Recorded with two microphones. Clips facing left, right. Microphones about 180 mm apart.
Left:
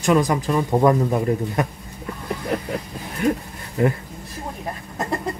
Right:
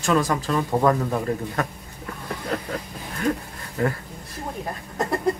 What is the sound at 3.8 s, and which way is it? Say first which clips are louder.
Speech: left 4 dB; 20° left (ahead or behind).